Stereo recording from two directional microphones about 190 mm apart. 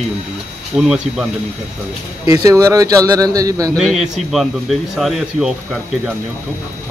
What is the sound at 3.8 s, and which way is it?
Speech, centre (ahead or behind).